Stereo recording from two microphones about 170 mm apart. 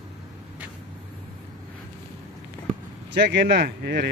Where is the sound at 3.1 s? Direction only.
90° right; by 4.1 s 70° right (ahead or behind).